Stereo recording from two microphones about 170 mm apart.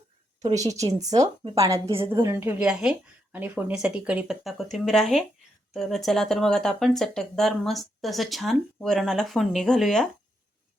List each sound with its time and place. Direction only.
0.5 s a woman's voice: 20° right (ahead or behind); by 10.1 s centre (ahead or behind)